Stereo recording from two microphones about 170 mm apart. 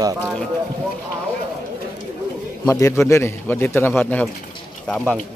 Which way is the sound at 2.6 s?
20° left (ahead or behind).